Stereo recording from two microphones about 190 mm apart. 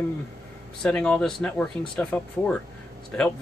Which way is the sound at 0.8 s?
5° left (ahead or behind).